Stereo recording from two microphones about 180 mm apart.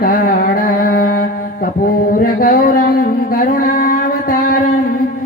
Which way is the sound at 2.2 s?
50° left (ahead or behind).